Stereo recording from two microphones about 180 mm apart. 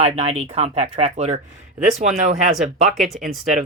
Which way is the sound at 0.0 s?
35° right (ahead or behind).